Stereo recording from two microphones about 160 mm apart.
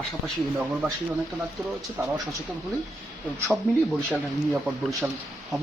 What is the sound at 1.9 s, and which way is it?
Speech, 15° right (ahead or behind).